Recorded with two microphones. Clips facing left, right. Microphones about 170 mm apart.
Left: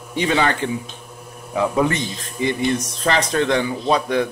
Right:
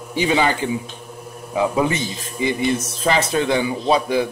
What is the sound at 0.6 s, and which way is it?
Speech, 5° right (ahead or behind).